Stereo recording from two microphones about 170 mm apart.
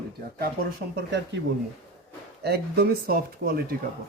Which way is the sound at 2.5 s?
70° right (ahead or behind).